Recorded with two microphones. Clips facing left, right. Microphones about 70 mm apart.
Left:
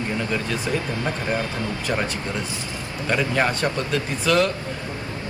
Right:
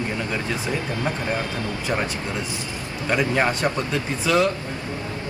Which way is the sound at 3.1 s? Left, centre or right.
Centre.